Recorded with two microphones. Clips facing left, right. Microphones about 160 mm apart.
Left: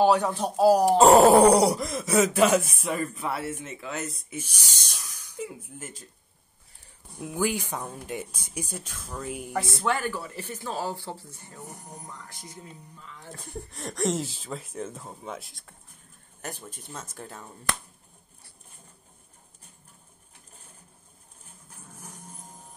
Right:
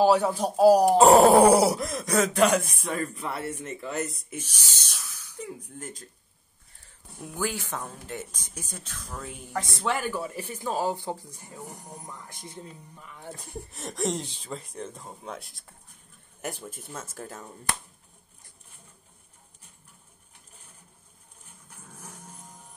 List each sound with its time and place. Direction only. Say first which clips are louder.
0.0 s speech: right 1 dB; 5° right (ahead or behind)
0.8 s speech: even; centre (ahead or behind)
4.4 s speech: left 3 dB; 10° left (ahead or behind)
5.4 s speech: left 1 dB; 5° left (ahead or behind)
7.3 s speech: left 3 dB; 15° left (ahead or behind); by 13.2 s 25° right (ahead or behind)
13.4 s speech: left 1 dB; centre (ahead or behind)
16.3 s speech: right 3 dB; 10° right (ahead or behind)